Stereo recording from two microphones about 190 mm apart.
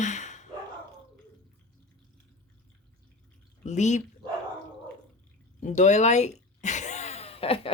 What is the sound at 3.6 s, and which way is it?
Speech, 40° left (ahead or behind).